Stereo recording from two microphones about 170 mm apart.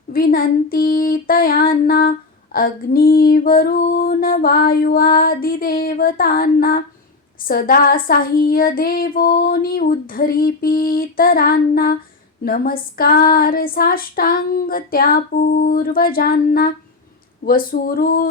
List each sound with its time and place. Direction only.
0.1 s female singing: 60° left (ahead or behind)